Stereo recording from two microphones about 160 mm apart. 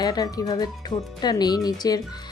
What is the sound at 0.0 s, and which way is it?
Speech, 25° left (ahead or behind).